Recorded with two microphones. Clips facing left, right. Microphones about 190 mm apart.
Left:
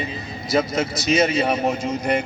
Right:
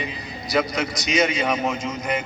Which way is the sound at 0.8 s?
30° left (ahead or behind).